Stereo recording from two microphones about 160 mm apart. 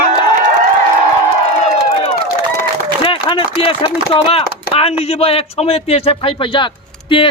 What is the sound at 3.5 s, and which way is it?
A man's voice, 35° left (ahead or behind).